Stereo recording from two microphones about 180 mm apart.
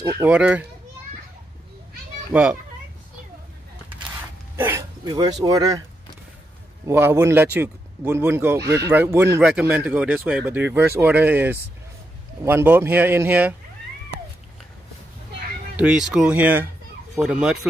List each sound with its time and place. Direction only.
0.0 s speech: 15° right (ahead or behind)
0.3 s speech: 5° right (ahead or behind)
2.3 s speech: 5° right (ahead or behind)
4.6 s hiccup: 10° right (ahead or behind)
5.1 s speech: 20° right (ahead or behind)
6.9 s speech: 15° right (ahead or behind)
15.7 s speech: 5° right (ahead or behind)